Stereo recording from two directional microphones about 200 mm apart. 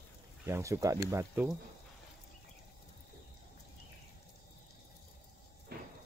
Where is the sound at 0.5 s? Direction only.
15° right (ahead or behind).